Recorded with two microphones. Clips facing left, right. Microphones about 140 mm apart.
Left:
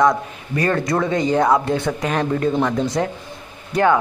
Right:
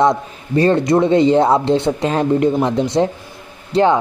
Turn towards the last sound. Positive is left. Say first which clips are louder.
# right 3 dB
turn(degrees=-25)  # may be behind; listen again after turning